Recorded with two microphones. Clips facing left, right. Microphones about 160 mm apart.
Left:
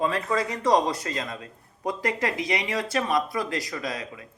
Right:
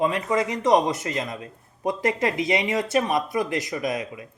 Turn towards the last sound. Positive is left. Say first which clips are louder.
# right 5 dB
turn(degrees=-20)  # may be behind; listen again after turning